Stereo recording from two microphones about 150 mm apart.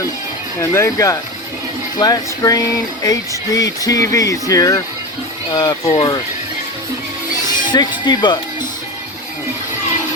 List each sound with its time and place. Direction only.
0.6 s speech: 20° left (ahead or behind)
7.7 s speech: 30° left (ahead or behind)